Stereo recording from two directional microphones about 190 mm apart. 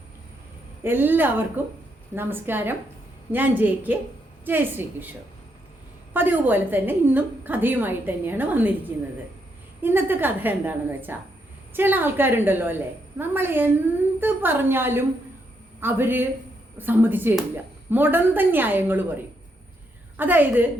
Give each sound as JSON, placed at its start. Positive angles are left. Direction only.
{"t": 0.9, "sound": "a woman's voice", "side_deg": -10}
{"t": 6.1, "sound": "a woman's voice", "side_deg": -10}
{"t": 9.8, "sound": "a woman's voice", "side_deg": -10}